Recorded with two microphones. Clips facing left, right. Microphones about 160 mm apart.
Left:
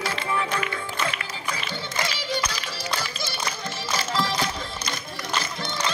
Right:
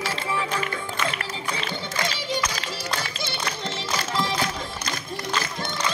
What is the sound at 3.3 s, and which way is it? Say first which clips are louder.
Music: right 1 dB; 20° right (ahead or behind).